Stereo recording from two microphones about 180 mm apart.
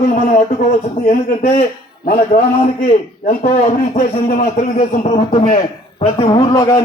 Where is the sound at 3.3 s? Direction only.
45° left (ahead or behind).